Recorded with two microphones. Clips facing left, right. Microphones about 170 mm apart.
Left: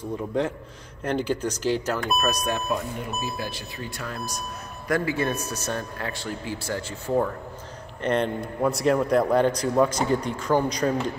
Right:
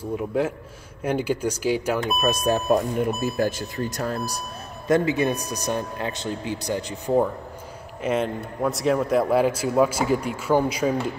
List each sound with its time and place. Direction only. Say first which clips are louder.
0.3 s a man's voice: even; 5° right (ahead or behind)
2.2 s speech: right 4 dB; 30° right (ahead or behind)
2.7 s speech: right 8 dB; 45° right (ahead or behind)
4.8 s a man's voice: right 4 dB; 20° right (ahead or behind)
8.0 s a man's voice: even; 5° right (ahead or behind)